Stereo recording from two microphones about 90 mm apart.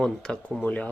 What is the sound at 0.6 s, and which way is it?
Speech, 15° left (ahead or behind).